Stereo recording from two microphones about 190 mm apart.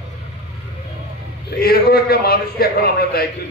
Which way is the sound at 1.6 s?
55° left (ahead or behind).